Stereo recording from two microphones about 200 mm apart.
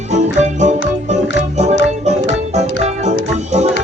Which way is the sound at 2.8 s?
35° right (ahead or behind).